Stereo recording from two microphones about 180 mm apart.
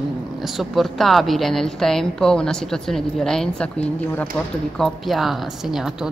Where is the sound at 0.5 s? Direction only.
Centre (ahead or behind).